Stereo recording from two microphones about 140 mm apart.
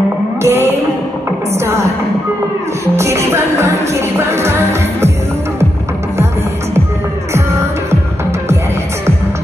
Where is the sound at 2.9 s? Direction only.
20° right (ahead or behind).